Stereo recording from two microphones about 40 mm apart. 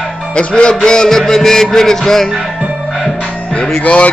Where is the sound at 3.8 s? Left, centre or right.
Left.